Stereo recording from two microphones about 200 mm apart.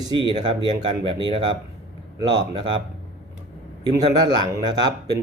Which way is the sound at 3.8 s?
20° right (ahead or behind).